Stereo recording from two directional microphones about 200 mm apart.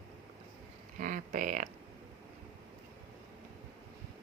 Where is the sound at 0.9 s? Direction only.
40° right (ahead or behind).